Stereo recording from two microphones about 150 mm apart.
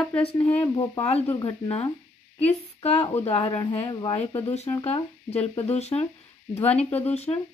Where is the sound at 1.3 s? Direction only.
30° left (ahead or behind).